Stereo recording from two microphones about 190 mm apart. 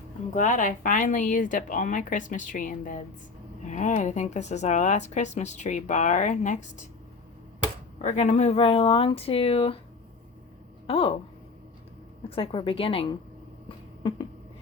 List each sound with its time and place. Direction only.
0.3 s speech: 40° left (ahead or behind)
8.0 s speech: 35° left (ahead or behind)
10.8 s speech: 30° left (ahead or behind)
12.3 s speech: 30° left (ahead or behind)
13.7 s a sound: 25° left (ahead or behind)